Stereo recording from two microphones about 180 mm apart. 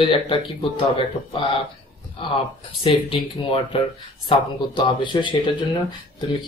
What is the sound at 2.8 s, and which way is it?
Speech, 30° left (ahead or behind).